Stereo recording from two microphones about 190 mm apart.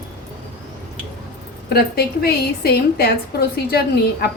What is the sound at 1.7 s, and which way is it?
A woman's voice, 55° left (ahead or behind).